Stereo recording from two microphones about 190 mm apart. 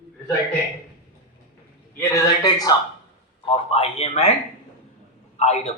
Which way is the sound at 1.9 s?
15° left (ahead or behind).